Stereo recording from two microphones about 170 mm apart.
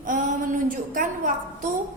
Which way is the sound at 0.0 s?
50° right (ahead or behind).